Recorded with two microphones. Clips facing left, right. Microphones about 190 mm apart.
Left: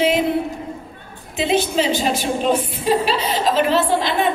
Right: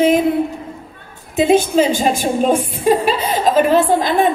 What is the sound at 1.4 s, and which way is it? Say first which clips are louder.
A woman's voice: right 6 dB; 45° right (ahead or behind).